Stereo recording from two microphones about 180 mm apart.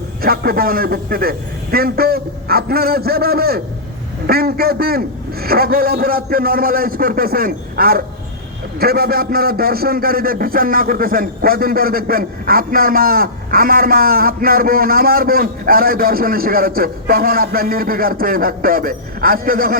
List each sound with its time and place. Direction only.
0.2 s a man's voice: 55° right (ahead or behind)